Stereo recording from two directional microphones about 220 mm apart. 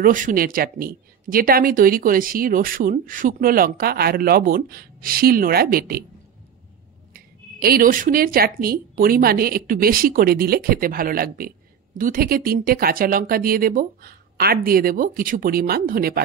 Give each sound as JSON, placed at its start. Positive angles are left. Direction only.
{"t": 0.0, "sound": "speech", "side_deg": -40}
{"t": 7.6, "sound": "speech", "side_deg": -40}